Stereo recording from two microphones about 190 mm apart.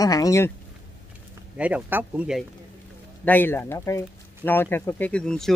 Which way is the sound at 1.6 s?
5° right (ahead or behind).